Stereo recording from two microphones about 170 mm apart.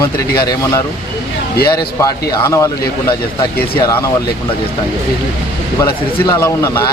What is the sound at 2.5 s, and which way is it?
Speech, 20° left (ahead or behind).